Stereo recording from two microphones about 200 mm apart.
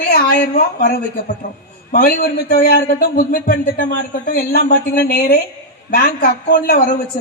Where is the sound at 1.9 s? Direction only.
45° left (ahead or behind).